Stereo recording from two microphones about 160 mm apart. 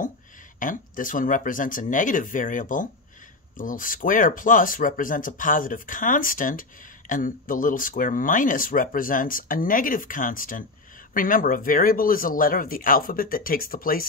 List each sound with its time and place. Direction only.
0.6 s speech: 55° left (ahead or behind)